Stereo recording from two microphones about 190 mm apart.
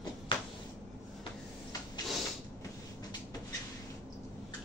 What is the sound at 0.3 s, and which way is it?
Cupboard open or close, 25° left (ahead or behind).